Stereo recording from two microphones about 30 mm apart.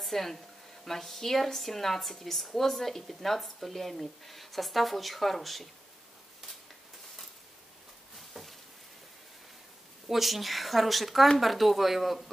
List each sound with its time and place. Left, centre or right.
0.0 s speech: centre
8.2 s a sound: centre
10.0 s speech: centre